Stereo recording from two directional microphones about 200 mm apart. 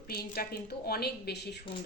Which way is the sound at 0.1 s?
50° left (ahead or behind).